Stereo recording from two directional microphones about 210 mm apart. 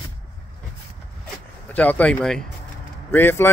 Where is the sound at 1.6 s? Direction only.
5° left (ahead or behind).